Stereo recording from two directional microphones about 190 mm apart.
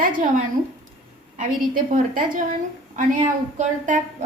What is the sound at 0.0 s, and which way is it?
A woman's voice, 40° right (ahead or behind).